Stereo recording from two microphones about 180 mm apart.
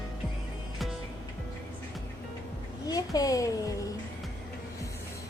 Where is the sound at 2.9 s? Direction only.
20° left (ahead or behind).